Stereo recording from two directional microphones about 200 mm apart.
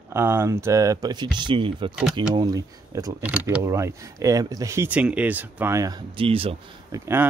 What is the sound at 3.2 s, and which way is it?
Speech, 5° right (ahead or behind).